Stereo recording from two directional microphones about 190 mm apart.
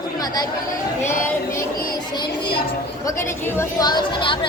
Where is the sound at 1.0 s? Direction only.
15° left (ahead or behind).